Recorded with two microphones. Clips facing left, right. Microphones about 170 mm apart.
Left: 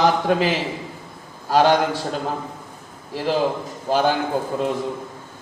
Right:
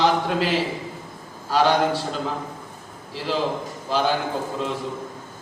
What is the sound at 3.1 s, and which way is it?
A man's voice, 50° left (ahead or behind).